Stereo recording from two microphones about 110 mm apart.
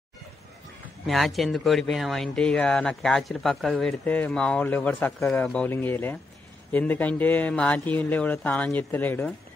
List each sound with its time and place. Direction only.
1.0 s speech: centre (ahead or behind); by 9.3 s 15° left (ahead or behind)